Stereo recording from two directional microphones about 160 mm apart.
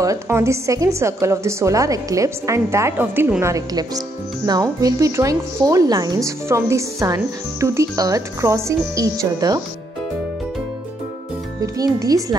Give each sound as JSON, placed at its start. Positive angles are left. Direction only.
{"t": 0.0, "sound": "a woman's voice", "side_deg": -20}
{"t": 11.6, "sound": "speech", "side_deg": -20}